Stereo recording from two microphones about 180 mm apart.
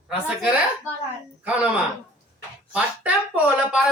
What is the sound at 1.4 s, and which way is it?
Speech, 5° right (ahead or behind).